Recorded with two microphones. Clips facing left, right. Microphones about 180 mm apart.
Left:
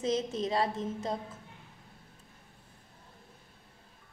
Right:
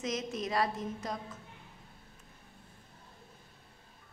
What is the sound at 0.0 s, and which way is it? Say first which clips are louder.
A woman's voice: left 5 dB; 30° left (ahead or behind).